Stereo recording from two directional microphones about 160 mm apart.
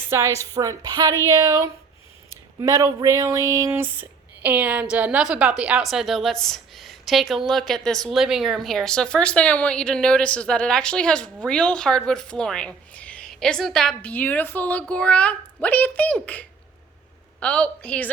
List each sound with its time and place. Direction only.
0.1 s a woman's voice: 15° right (ahead or behind); by 18.1 s 5° left (ahead or behind)